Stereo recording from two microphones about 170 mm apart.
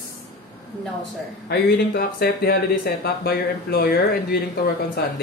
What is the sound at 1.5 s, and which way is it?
Speech, 70° left (ahead or behind).